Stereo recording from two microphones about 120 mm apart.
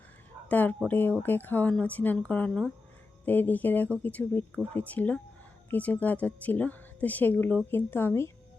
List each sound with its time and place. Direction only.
0.4 s a woman's voice: 15° left (ahead or behind)